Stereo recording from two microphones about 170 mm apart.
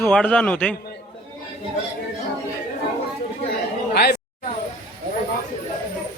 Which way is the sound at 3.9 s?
70° left (ahead or behind).